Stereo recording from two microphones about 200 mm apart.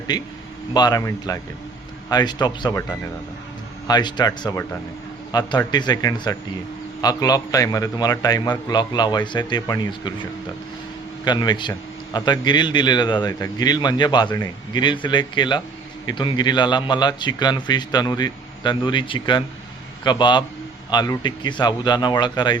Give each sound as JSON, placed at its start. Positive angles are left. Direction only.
{"t": 0.7, "sound": "a man's voice", "side_deg": 20}
{"t": 11.3, "sound": "a man's voice", "side_deg": 20}